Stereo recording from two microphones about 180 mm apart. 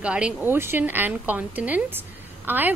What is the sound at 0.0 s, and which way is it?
A woman's voice, 5° right (ahead or behind).